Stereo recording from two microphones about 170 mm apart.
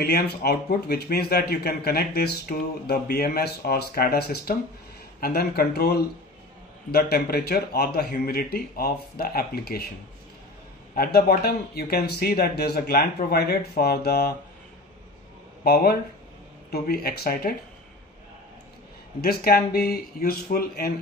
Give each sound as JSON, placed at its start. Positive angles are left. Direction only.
{"t": 0.0, "sound": "speech", "side_deg": 65}
{"t": 11.0, "sound": "speech", "side_deg": 60}
{"t": 15.6, "sound": "speech", "side_deg": 65}
{"t": 19.2, "sound": "speech", "side_deg": 65}